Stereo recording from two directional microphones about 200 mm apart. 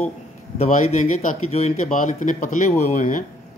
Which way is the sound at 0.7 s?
40° left (ahead or behind).